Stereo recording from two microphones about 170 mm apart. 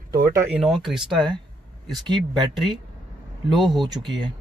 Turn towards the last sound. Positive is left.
turn(degrees=-25)  # may be behind; listen again after turning